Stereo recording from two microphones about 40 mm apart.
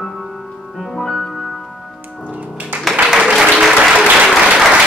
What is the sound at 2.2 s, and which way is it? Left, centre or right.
Music, right.